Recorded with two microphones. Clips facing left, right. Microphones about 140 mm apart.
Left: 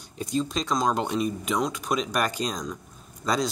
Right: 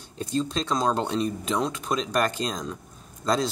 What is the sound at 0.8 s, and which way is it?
Speech, 10° left (ahead or behind).